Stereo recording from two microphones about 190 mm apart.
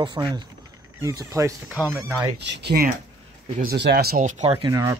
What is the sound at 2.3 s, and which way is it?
Speech, 65° right (ahead or behind).